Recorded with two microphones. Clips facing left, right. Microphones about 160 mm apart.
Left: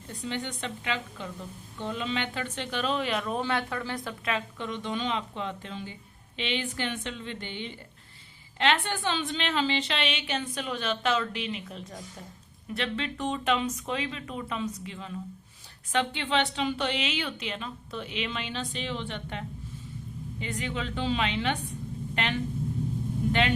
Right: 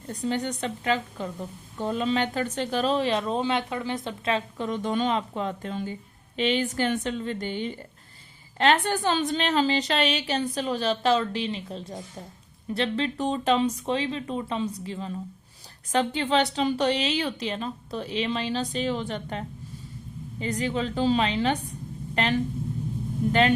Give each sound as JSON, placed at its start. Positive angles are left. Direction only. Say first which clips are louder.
{"t": 0.1, "sound": "a woman's voice", "louder": "right 6 dB", "side_deg": -40}